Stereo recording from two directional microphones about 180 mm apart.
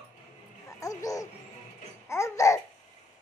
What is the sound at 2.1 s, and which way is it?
Babbling, 15° left (ahead or behind).